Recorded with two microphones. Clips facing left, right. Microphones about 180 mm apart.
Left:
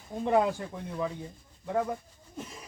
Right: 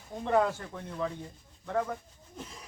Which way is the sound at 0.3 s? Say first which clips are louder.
Left 1 dB; 15° left (ahead or behind).